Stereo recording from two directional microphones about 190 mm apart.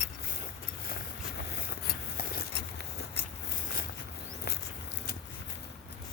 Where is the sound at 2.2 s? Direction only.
55° left (ahead or behind).